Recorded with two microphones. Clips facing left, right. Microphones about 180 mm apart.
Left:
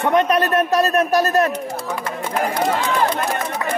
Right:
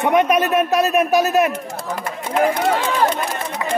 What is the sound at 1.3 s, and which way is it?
Speech, 5° right (ahead or behind).